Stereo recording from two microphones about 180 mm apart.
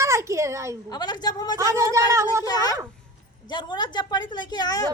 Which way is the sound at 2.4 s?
20° left (ahead or behind).